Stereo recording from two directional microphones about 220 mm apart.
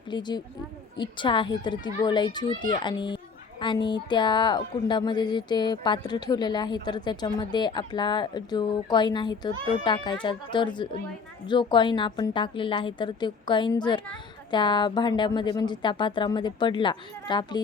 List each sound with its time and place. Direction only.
0.1 s speech: 20° left (ahead or behind)